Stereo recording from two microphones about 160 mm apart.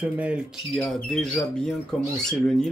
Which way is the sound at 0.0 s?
10° right (ahead or behind).